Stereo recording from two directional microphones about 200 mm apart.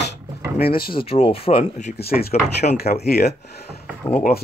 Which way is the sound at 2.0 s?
50° left (ahead or behind).